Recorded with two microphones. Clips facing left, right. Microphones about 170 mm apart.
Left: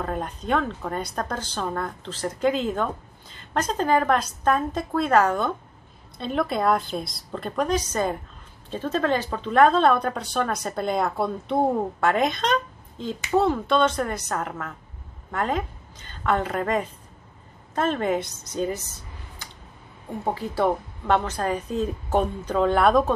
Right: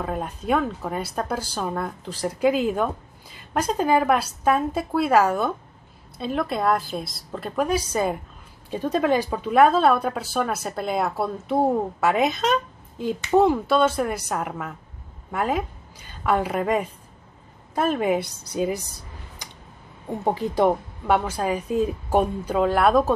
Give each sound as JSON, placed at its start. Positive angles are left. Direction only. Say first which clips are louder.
{"t": 0.0, "sound": "a woman's voice", "louder": "right 1 dB", "side_deg": -5}